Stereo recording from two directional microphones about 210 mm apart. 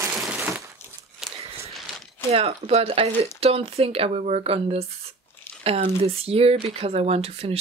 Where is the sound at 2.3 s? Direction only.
30° right (ahead or behind).